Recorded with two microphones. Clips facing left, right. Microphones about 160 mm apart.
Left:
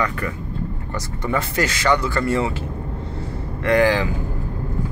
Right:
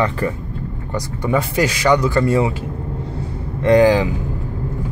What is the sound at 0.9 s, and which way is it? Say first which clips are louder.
Speech: right 5 dB; 15° right (ahead or behind).